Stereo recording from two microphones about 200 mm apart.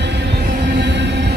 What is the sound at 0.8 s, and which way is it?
Music, 60° right (ahead or behind).